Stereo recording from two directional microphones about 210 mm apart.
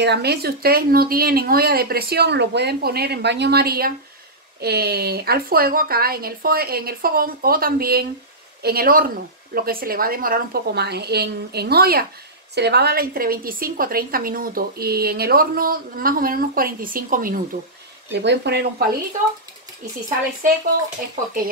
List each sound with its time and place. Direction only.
0.0 s a woman's voice: 50° right (ahead or behind)
18.2 s a woman's voice: 55° right (ahead or behind)